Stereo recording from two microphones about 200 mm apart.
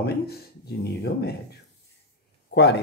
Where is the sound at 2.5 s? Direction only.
55° left (ahead or behind).